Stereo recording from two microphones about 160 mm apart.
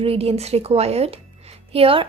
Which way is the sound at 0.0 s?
40° right (ahead or behind).